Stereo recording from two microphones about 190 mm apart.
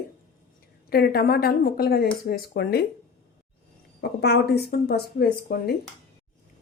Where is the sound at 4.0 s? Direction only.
60° left (ahead or behind).